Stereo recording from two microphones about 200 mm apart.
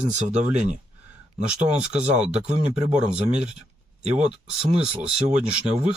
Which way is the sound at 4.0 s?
35° right (ahead or behind).